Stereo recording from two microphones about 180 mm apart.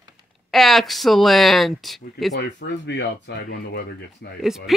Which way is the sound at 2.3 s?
70° left (ahead or behind).